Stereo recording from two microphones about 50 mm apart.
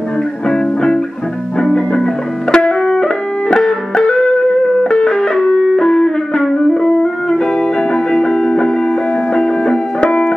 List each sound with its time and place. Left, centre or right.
1.6 s music: centre